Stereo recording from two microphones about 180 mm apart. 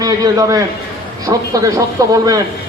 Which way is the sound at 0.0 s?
20° right (ahead or behind).